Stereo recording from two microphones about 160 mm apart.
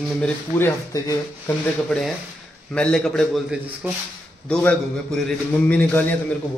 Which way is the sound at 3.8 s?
10° right (ahead or behind).